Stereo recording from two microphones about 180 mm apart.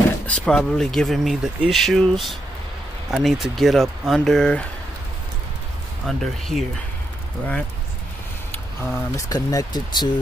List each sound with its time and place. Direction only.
0.3 s speech: 5° left (ahead or behind)
6.0 s speech: centre (ahead or behind)
8.5 s speech: 15° left (ahead or behind)